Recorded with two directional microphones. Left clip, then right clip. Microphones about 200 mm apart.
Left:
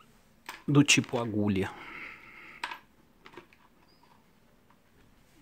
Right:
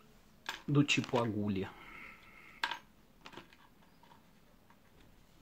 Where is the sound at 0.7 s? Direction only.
50° left (ahead or behind).